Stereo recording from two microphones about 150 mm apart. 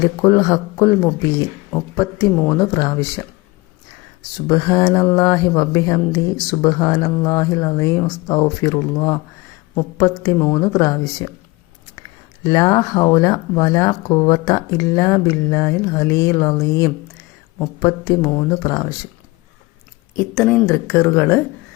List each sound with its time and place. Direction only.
0.0 s speech: 25° left (ahead or behind)
4.4 s speech: 30° left (ahead or behind)
12.4 s speech: 25° left (ahead or behind)
20.1 s speech: 10° left (ahead or behind)